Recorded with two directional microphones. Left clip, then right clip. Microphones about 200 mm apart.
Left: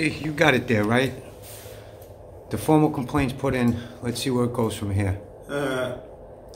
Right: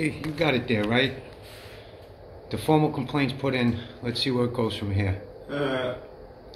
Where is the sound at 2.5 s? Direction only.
5° left (ahead or behind).